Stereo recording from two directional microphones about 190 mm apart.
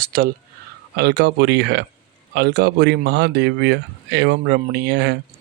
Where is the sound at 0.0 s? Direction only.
50° right (ahead or behind).